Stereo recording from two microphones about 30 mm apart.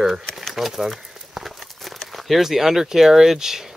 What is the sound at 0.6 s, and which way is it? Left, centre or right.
Crumpling, centre.